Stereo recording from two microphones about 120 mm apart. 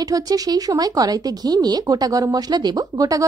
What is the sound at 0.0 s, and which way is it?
Speech, 30° right (ahead or behind).